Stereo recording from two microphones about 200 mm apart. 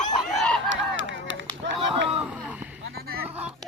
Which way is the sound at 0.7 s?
70° right (ahead or behind).